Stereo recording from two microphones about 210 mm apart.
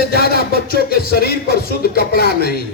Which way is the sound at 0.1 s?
45° left (ahead or behind).